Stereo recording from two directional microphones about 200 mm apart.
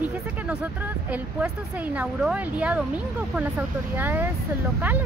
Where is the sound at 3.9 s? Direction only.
10° right (ahead or behind).